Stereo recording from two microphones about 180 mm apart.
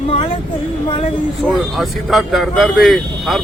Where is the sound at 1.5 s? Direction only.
Centre (ahead or behind).